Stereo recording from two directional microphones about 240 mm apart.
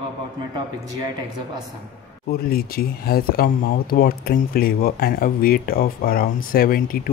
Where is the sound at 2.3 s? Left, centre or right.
Left.